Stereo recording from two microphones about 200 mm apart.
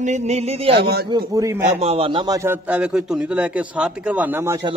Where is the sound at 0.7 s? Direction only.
55° right (ahead or behind).